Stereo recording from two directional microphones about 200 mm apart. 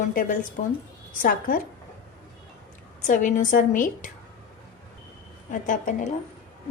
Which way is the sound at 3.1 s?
40° left (ahead or behind).